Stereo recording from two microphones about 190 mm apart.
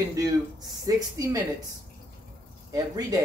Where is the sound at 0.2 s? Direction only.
20° right (ahead or behind).